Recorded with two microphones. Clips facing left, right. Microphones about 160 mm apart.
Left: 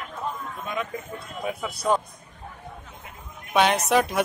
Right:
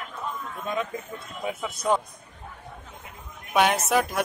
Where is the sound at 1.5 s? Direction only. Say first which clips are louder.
Left 1 dB; 20° right (ahead or behind).